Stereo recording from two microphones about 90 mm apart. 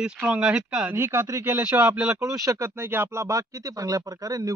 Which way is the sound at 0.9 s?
25° right (ahead or behind).